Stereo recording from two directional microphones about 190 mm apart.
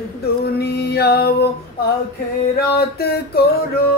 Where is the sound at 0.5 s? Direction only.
60° left (ahead or behind).